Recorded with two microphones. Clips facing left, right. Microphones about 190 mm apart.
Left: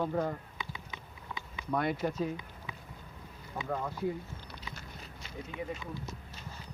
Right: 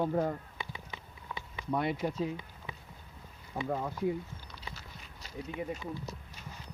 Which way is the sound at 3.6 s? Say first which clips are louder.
Right 1 dB; 20° right (ahead or behind).